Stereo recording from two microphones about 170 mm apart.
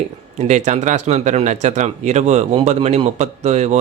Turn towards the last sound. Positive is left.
turn(degrees=-40)  # may be behind; listen again after turning